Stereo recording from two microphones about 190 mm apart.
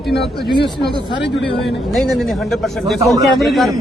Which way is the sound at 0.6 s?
65° left (ahead or behind).